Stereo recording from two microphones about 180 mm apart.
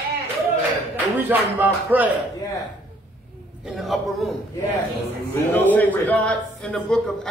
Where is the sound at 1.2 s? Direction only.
10° right (ahead or behind).